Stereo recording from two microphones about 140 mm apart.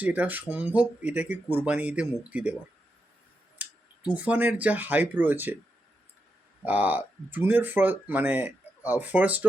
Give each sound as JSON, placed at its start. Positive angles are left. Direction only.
{"t": 0.0, "sound": "speech", "side_deg": -10}
{"t": 3.6, "sound": "speech", "side_deg": -10}
{"t": 6.7, "sound": "speech", "side_deg": -10}